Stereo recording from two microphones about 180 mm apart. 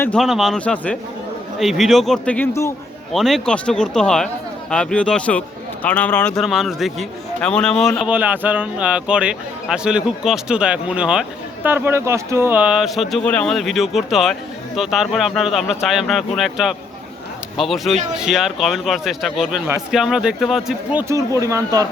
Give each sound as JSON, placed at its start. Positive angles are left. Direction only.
{"t": 0.0, "sound": "a man's voice", "side_deg": 5}
{"t": 3.1, "sound": "a man's voice", "side_deg": 0}
{"t": 21.0, "sound": "speech", "side_deg": -15}